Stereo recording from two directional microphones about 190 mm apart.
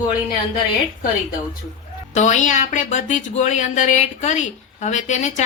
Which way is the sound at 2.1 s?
40° left (ahead or behind).